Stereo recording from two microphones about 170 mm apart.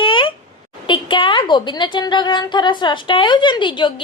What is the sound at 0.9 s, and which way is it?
A woman's voice, 30° left (ahead or behind).